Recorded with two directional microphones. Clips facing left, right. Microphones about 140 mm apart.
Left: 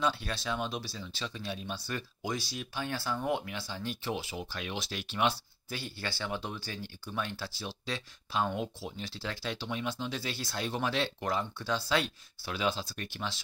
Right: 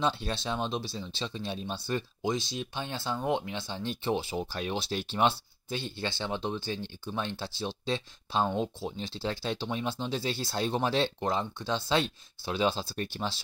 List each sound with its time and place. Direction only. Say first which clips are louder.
0.0 s speech: right 2 dB; 25° right (ahead or behind)